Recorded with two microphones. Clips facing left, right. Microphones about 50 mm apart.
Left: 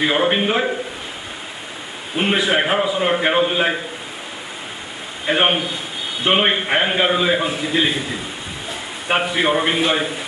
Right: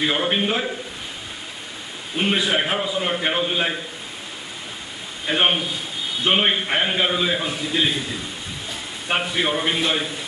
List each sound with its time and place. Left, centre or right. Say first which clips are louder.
0.0 s a man's voice: left 4 dB; centre
2.1 s a man's voice: left 3 dB; centre
5.2 s a man's voice: left 3 dB; centre
9.1 s a man's voice: left 4 dB; centre